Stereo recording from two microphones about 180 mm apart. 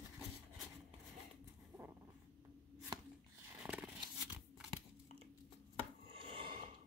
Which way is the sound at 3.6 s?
5° right (ahead or behind).